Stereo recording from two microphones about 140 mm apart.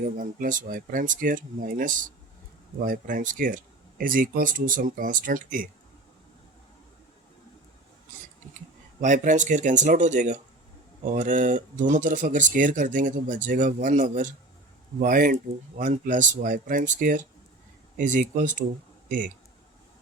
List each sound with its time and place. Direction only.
0.0 s speech: 65° right (ahead or behind)
2.8 s speech: 85° right
9.0 s speech: 60° right (ahead or behind)
15.0 s speech: 75° right (ahead or behind)
15.8 s speech: 65° right (ahead or behind)